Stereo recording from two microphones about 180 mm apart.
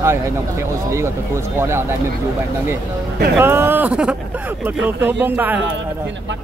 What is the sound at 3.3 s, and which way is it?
Speech, 15° right (ahead or behind).